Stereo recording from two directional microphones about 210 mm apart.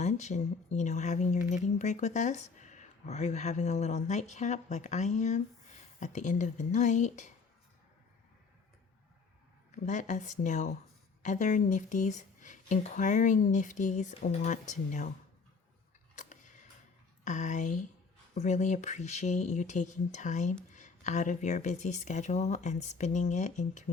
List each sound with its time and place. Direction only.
0.0 s speech: 35° left (ahead or behind)
9.7 s speech: 35° left (ahead or behind)
17.2 s speech: 35° left (ahead or behind)